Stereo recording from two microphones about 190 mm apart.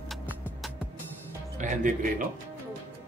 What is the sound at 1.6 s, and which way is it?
Speech, 45° right (ahead or behind).